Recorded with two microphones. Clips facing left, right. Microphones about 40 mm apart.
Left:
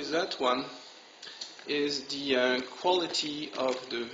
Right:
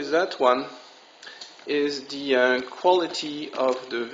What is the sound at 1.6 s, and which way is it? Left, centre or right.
Speech, centre.